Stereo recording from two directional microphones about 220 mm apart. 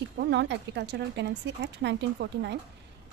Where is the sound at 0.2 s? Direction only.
55° right (ahead or behind).